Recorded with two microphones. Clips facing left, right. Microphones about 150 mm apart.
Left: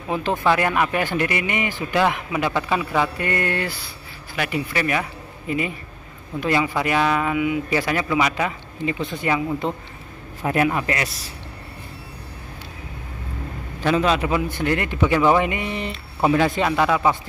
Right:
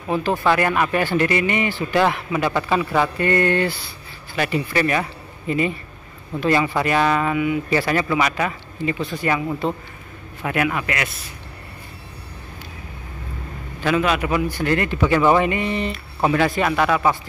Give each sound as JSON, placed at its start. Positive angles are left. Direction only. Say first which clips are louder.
{"t": 0.1, "sound": "a man's voice", "louder": "right 1 dB", "side_deg": 20}
{"t": 10.4, "sound": "a man's voice", "louder": "left 2 dB", "side_deg": 30}
{"t": 13.9, "sound": "a man's voice", "louder": "even", "side_deg": 25}